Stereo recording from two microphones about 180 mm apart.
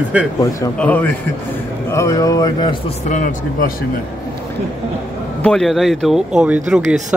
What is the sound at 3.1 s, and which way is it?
Speech, 45° left (ahead or behind).